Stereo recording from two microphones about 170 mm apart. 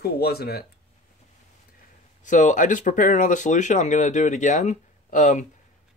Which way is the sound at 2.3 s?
45° left (ahead or behind).